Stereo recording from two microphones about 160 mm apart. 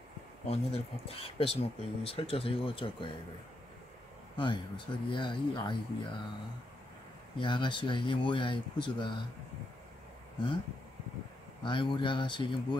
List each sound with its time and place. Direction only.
0.5 s speech: 40° left (ahead or behind)
4.4 s speech: 30° left (ahead or behind)
7.3 s speech: 30° left (ahead or behind)
11.6 s speech: 30° left (ahead or behind)